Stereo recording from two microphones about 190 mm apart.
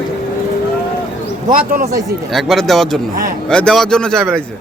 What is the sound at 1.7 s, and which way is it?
Speech, 55° right (ahead or behind).